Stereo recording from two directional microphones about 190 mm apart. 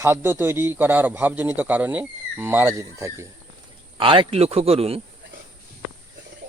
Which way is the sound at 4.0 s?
25° right (ahead or behind).